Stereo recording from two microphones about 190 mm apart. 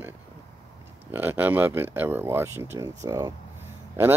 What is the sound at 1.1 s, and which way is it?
Speech, 10° right (ahead or behind).